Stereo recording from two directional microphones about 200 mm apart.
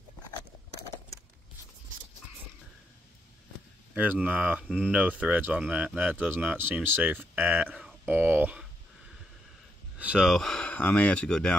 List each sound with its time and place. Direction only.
3.9 s speech: 10° right (ahead or behind)
9.9 s speech: 5° right (ahead or behind)